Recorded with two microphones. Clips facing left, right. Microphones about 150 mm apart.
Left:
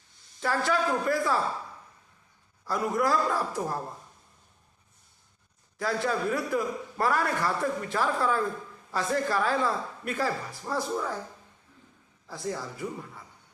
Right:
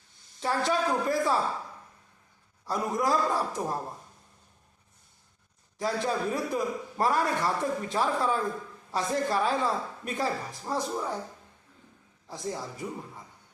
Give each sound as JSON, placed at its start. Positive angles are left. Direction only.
{"t": 0.4, "sound": "a man's voice", "side_deg": -15}
{"t": 2.6, "sound": "a man's voice", "side_deg": -15}
{"t": 5.8, "sound": "a man's voice", "side_deg": -15}
{"t": 12.3, "sound": "speech", "side_deg": -20}